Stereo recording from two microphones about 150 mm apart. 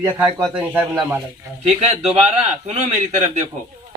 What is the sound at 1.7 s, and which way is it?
A man's voice, 45° right (ahead or behind).